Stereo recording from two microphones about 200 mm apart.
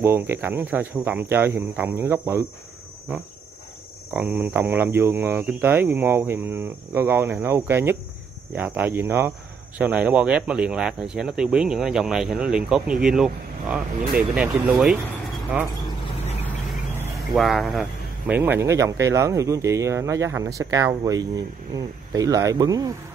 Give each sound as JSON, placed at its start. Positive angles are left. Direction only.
{"t": 0.0, "sound": "speech", "side_deg": -10}
{"t": 4.1, "sound": "speech", "side_deg": -10}
{"t": 17.4, "sound": "speech", "side_deg": 0}